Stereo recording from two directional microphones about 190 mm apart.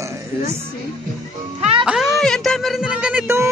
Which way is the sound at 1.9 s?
Centre (ahead or behind).